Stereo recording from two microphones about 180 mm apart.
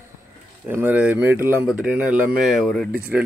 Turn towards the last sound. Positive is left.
turn(degrees=0)  # may be behind; listen again after turning